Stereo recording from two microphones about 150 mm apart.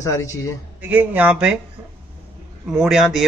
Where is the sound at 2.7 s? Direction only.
5° right (ahead or behind).